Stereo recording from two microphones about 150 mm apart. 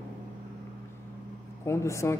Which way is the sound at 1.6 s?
20° left (ahead or behind).